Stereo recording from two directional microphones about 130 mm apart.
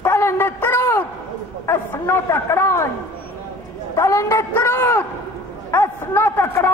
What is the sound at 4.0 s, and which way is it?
A man's voice, 20° left (ahead or behind).